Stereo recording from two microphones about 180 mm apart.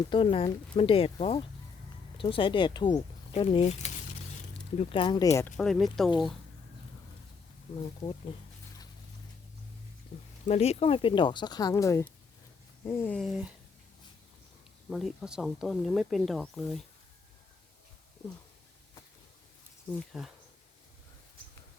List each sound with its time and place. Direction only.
0.1 s speech: 30° left (ahead or behind); by 5.5 s 15° left (ahead or behind)
5.5 s speech: centre (ahead or behind)
6.1 s speech: 25° left (ahead or behind)
10.4 s speech: 35° left (ahead or behind); by 13.1 s 15° left (ahead or behind)
13.1 s speech: 5° right (ahead or behind)
14.8 s speech: centre (ahead or behind)
20.1 s speech: centre (ahead or behind)